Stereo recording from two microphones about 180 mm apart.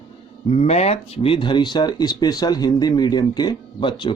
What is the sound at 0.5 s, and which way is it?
Speech, 35° left (ahead or behind).